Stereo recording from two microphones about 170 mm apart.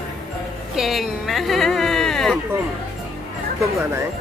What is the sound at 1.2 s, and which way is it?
Music, centre (ahead or behind).